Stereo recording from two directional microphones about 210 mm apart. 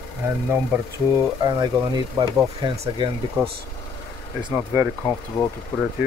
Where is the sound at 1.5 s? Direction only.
20° right (ahead or behind).